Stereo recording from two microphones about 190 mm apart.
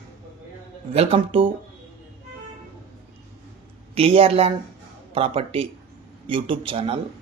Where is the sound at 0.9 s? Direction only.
30° right (ahead or behind).